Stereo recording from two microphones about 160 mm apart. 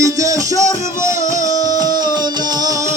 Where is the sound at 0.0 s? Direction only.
20° right (ahead or behind).